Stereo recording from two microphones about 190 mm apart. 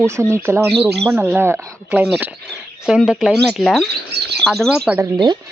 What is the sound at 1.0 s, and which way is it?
Speech, 10° right (ahead or behind).